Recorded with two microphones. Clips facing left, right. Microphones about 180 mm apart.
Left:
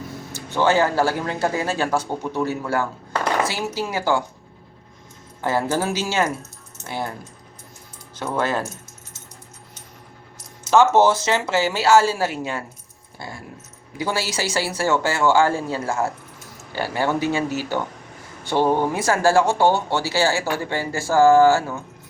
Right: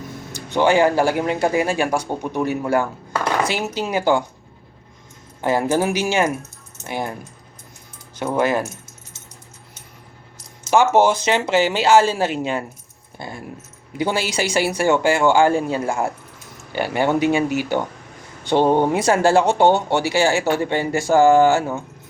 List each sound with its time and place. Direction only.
0.3 s speech: 15° right (ahead or behind)
5.4 s speech: 15° right (ahead or behind)
8.1 s speech: 15° right (ahead or behind)
10.7 s speech: 15° right (ahead or behind)